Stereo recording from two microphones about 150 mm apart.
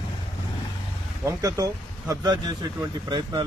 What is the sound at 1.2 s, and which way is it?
Speech, 20° right (ahead or behind).